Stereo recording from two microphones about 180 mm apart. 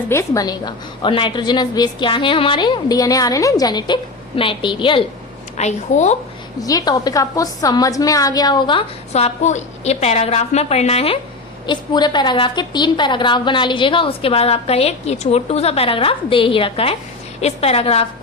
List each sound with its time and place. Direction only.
0.1 s a woman's voice: 15° left (ahead or behind)
5.5 s a woman's voice: 40° left (ahead or behind)
6.6 s a woman's voice: 20° left (ahead or behind)